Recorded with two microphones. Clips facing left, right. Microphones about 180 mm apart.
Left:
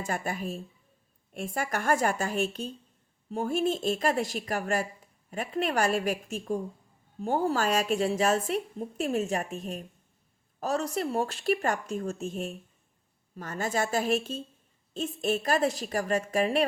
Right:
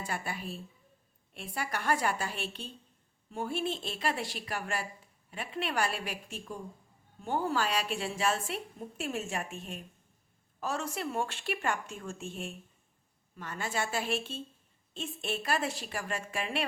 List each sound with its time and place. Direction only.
0.0 s a woman's voice: 45° left (ahead or behind)